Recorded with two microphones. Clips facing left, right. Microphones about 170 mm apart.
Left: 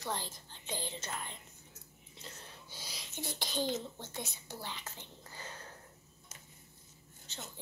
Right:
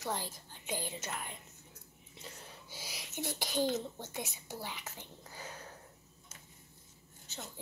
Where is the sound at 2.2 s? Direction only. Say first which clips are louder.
Right 1 dB; 10° right (ahead or behind).